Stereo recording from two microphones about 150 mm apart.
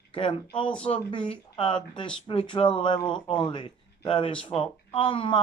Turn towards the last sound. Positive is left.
turn(degrees=40)  # may be behind; listen again after turning